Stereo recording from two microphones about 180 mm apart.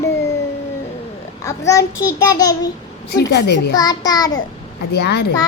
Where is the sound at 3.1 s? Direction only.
70° left (ahead or behind).